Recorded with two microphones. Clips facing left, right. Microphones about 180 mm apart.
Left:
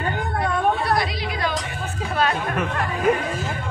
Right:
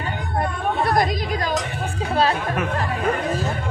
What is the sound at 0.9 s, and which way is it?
Chatter, 45° right (ahead or behind).